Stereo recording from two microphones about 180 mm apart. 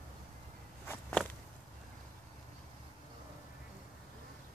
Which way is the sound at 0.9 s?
10° left (ahead or behind).